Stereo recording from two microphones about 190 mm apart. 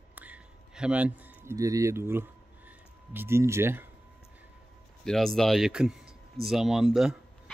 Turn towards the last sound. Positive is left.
turn(degrees=0)  # may be behind; listen again after turning